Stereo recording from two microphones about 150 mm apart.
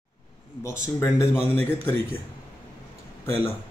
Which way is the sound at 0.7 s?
20° left (ahead or behind).